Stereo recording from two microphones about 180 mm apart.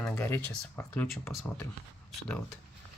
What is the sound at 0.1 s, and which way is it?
Speech, 10° left (ahead or behind).